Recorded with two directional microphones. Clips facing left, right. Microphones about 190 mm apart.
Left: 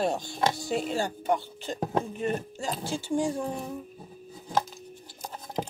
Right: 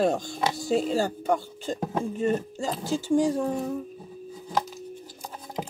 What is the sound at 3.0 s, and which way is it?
Speech, 40° right (ahead or behind).